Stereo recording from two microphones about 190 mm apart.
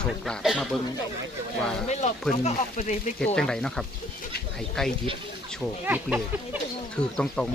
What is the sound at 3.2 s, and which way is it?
Speech, 5° left (ahead or behind).